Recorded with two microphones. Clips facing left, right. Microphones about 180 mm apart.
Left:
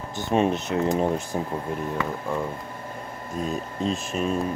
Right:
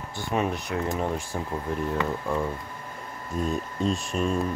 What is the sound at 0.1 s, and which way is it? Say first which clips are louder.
Speech: left 5 dB; 20° left (ahead or behind).